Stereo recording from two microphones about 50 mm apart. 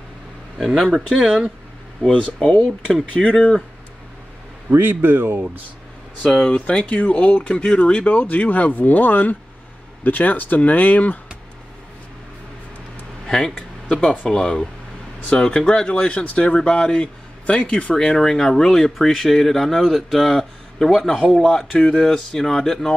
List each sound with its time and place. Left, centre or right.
0.7 s speech: centre
1.0 s speech: centre
2.4 s speech: left
4.6 s a man's voice: right
6.4 s speech: left
13.3 s speech: centre